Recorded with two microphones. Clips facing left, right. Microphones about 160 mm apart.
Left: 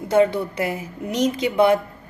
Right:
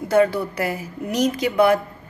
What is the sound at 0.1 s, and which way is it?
A woman's voice, 20° left (ahead or behind).